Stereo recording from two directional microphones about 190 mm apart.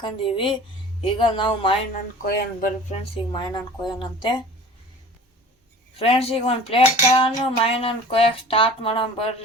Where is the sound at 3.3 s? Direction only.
20° left (ahead or behind).